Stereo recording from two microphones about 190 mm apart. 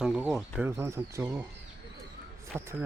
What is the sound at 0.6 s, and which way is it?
Speech, 10° right (ahead or behind).